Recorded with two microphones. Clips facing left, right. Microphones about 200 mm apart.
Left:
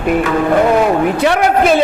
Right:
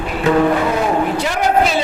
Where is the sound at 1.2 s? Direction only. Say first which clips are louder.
Left 4 dB; 65° left (ahead or behind).